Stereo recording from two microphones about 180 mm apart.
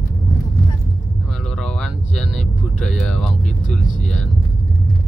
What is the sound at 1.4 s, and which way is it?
Vehicle, 5° left (ahead or behind).